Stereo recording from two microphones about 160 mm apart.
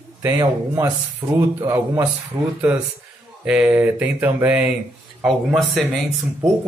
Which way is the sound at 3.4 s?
5° right (ahead or behind).